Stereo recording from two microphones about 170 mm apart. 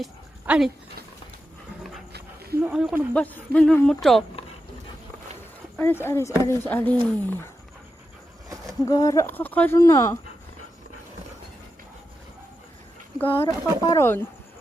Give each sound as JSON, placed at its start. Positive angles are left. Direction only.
{"t": 0.0, "sound": "dog", "side_deg": -5}
{"t": 2.1, "sound": "a sound", "side_deg": -65}
{"t": 2.6, "sound": "speech", "side_deg": -5}
{"t": 3.1, "sound": "speech", "side_deg": 10}
{"t": 5.7, "sound": "speech", "side_deg": 15}
{"t": 8.9, "sound": "speech", "side_deg": 20}
{"t": 13.1, "sound": "speech", "side_deg": 10}